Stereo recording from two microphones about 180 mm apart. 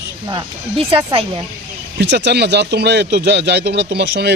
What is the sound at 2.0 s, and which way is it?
Speech, 75° right (ahead or behind).